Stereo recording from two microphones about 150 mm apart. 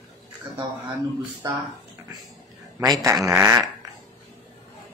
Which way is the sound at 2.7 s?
20° right (ahead or behind).